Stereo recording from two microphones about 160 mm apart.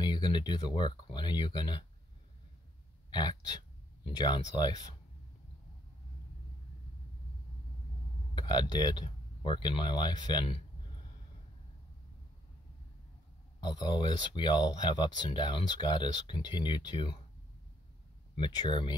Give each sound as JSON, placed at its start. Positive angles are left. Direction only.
{"t": 0.0, "sound": "speech", "side_deg": 30}
{"t": 3.1, "sound": "speech", "side_deg": 30}
{"t": 8.4, "sound": "speech", "side_deg": 30}
{"t": 13.7, "sound": "speech", "side_deg": 25}
{"t": 18.3, "sound": "speech", "side_deg": 30}